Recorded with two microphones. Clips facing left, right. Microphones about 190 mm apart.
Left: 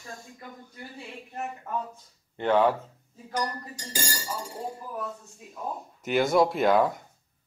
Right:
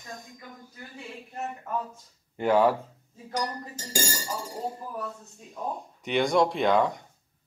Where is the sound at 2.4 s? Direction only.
10° right (ahead or behind).